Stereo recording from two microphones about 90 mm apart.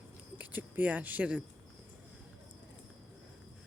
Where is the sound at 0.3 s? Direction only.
20° right (ahead or behind).